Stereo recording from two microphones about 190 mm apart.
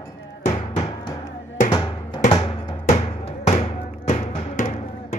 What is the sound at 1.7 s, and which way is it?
Music, 25° left (ahead or behind).